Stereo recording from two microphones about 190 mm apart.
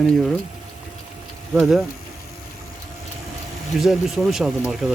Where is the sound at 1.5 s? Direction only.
Centre (ahead or behind).